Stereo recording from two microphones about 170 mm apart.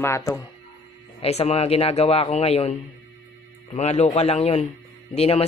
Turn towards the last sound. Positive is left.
turn(degrees=35)  # may be behind; listen again after turning